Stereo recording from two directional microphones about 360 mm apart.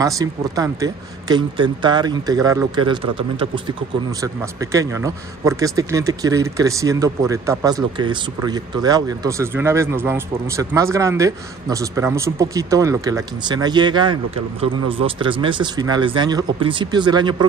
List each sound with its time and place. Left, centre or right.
0.0 s speech: centre